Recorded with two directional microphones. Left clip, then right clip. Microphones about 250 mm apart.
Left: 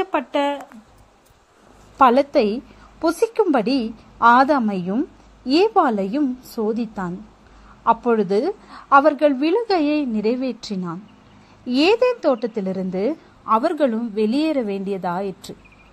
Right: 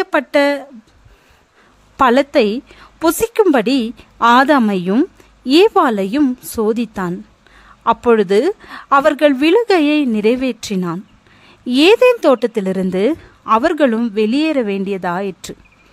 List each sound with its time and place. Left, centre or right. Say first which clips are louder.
0.0 s a woman's voice: right 7 dB; right
2.0 s a woman's voice: right 3 dB; right